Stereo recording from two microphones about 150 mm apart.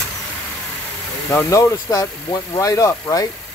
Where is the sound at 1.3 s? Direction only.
20° left (ahead or behind).